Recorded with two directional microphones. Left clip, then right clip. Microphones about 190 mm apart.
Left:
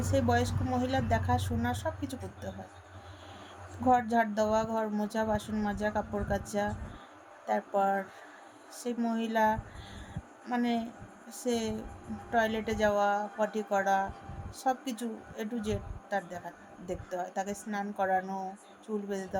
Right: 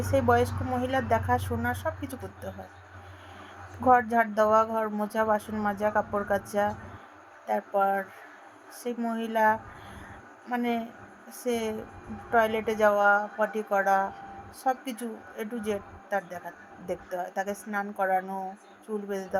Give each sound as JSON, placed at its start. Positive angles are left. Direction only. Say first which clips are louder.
{"t": 0.1, "sound": "speech", "louder": "right 6 dB", "side_deg": 15}
{"t": 3.8, "sound": "speech", "louder": "right 5 dB", "side_deg": 15}